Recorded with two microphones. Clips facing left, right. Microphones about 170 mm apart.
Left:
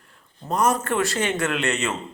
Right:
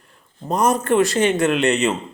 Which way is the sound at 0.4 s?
20° right (ahead or behind).